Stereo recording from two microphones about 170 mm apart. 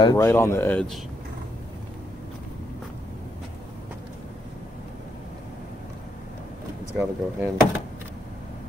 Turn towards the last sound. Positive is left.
turn(degrees=-10)  # may be behind; listen again after turning